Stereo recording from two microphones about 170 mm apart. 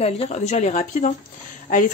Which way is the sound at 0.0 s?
40° left (ahead or behind).